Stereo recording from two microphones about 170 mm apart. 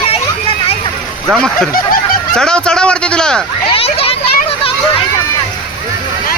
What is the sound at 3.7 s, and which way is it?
Children playing, 35° left (ahead or behind).